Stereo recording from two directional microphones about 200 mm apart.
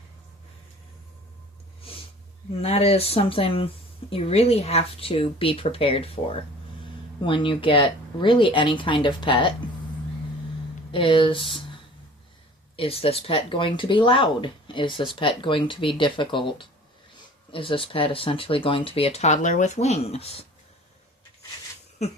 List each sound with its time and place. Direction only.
2.6 s speech: 30° left (ahead or behind)
10.9 s speech: 25° left (ahead or behind)